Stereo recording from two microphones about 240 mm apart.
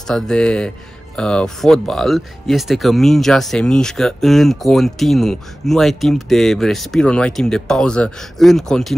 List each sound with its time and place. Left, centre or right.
0.0 s speech: centre